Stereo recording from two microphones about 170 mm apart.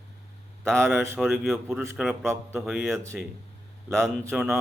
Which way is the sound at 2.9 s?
15° right (ahead or behind).